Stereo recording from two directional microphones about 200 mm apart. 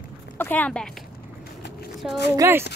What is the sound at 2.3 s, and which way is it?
Speech, 15° right (ahead or behind).